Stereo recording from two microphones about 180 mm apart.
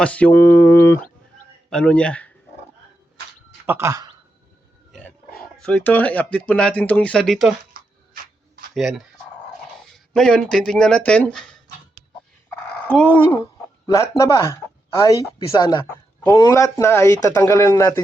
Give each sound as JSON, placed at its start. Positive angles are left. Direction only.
{"t": 0.0, "sound": "speech", "side_deg": 5}
{"t": 3.7, "sound": "speech", "side_deg": -15}
{"t": 4.9, "sound": "wild animals", "side_deg": 5}
{"t": 5.6, "sound": "speech", "side_deg": 5}
{"t": 8.7, "sound": "speech", "side_deg": 0}
{"t": 10.1, "sound": "speech", "side_deg": 5}
{"t": 12.9, "sound": "speech", "side_deg": 10}